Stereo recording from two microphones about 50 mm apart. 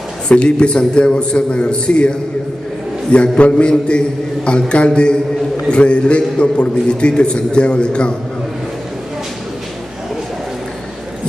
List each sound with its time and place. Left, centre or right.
0.3 s a man's voice: centre